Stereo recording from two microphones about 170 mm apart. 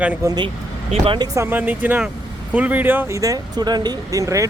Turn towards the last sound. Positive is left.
turn(degrees=-20)  # may be behind; listen again after turning